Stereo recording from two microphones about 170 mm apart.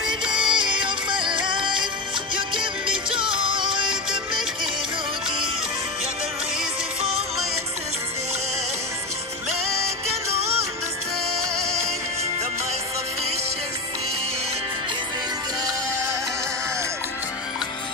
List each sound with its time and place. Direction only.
0.3 s music: 30° right (ahead or behind)